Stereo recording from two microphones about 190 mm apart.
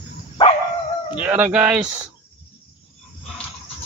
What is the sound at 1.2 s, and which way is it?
Speech, 5° right (ahead or behind).